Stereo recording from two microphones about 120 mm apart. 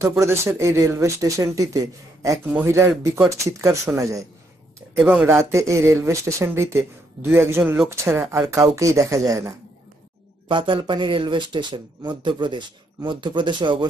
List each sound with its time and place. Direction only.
0.2 s speech: 25° right (ahead or behind)
4.9 s speech: 5° right (ahead or behind)
5.2 s speech: 20° right (ahead or behind)
10.5 s speech: 45° right (ahead or behind)